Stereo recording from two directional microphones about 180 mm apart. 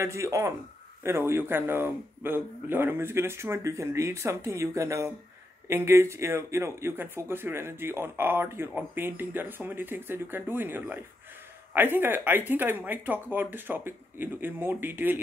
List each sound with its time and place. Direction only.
0.0 s speech: 15° right (ahead or behind)